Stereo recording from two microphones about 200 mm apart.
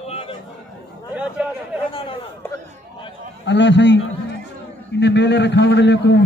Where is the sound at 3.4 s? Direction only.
60° left (ahead or behind).